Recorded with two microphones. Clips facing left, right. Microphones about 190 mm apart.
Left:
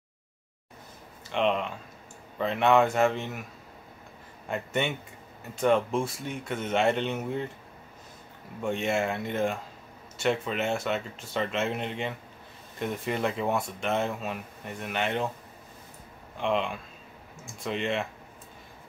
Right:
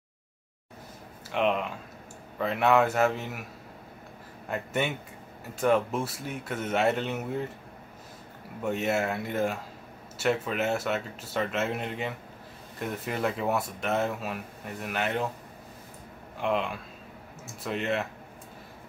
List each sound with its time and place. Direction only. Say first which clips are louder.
1.3 s speech: even; 5° right (ahead or behind)
4.5 s speech: even; 5° right (ahead or behind)
8.6 s speech: even; 5° right (ahead or behind)
16.3 s speech: left 1 dB; 5° right (ahead or behind)